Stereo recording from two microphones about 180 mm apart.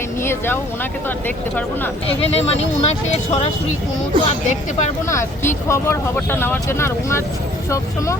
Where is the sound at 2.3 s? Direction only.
35° left (ahead or behind).